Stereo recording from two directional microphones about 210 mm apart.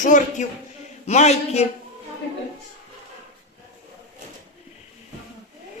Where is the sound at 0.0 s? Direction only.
35° left (ahead or behind).